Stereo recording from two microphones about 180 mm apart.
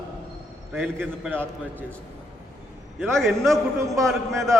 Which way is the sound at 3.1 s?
Centre (ahead or behind).